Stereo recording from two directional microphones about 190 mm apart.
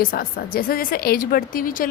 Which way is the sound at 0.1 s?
50° left (ahead or behind).